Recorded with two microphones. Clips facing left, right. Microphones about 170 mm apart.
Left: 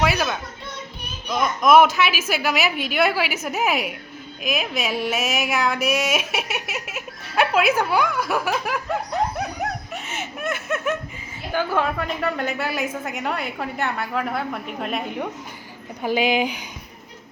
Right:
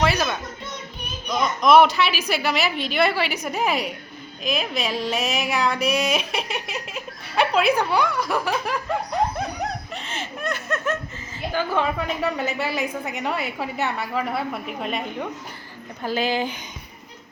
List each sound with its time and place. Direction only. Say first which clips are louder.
0.0 s a sound: even; 5° left (ahead or behind)
1.3 s speech: even; 5° left (ahead or behind)
9.4 s laughter: left 1 dB; 5° left (ahead or behind)
11.5 s speech: left 1 dB; 5° left (ahead or behind)
16.0 s speech: left 3 dB; 15° left (ahead or behind)